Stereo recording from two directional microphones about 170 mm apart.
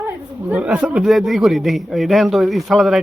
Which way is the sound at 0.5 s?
10° right (ahead or behind).